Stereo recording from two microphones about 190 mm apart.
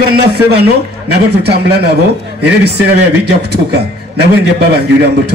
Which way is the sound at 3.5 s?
60° right (ahead or behind).